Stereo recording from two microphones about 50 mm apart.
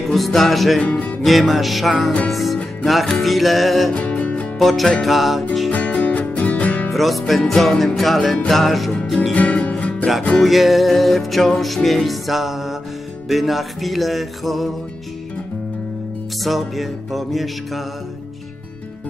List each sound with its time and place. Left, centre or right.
0.1 s music: centre
0.8 s speech: left
1.2 s music: centre
3.9 s music: left
4.6 s music: centre
5.7 s music: left
6.9 s music: centre
9.3 s music: left
10.4 s music: centre
16.4 s music: centre